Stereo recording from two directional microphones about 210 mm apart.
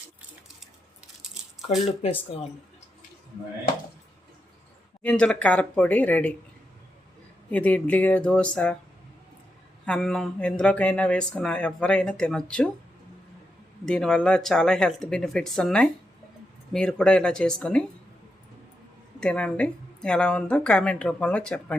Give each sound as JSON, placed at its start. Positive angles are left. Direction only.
{"t": 2.0, "sound": "speech", "side_deg": 30}
{"t": 5.0, "sound": "speech", "side_deg": 5}
{"t": 7.5, "sound": "speech", "side_deg": 5}
{"t": 9.8, "sound": "speech", "side_deg": 5}
{"t": 13.8, "sound": "speech", "side_deg": 5}
{"t": 19.2, "sound": "speech", "side_deg": 5}